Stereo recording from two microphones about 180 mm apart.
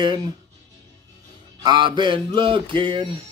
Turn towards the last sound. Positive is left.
turn(degrees=-25)  # may be behind; listen again after turning